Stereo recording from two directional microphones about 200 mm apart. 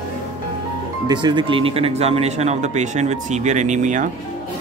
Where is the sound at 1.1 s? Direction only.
20° right (ahead or behind).